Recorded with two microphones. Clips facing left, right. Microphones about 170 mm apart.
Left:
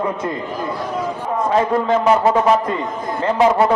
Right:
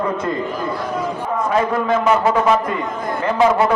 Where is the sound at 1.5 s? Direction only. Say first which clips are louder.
Left 2 dB; 25° left (ahead or behind).